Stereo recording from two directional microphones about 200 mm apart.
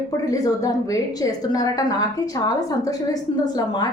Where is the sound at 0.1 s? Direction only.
15° left (ahead or behind).